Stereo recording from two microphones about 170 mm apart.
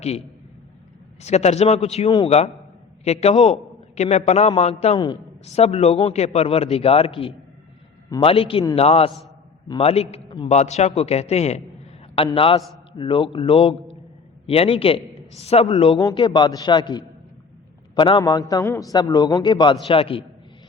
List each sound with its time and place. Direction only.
1.2 s a man's voice: 40° left (ahead or behind)
2.0 s a man's voice: 25° left (ahead or behind)
3.0 s a man's voice: 40° left (ahead or behind)
16.0 s a man's voice: 20° left (ahead or behind)